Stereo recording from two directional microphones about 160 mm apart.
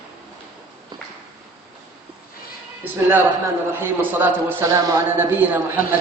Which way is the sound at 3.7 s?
10° right (ahead or behind).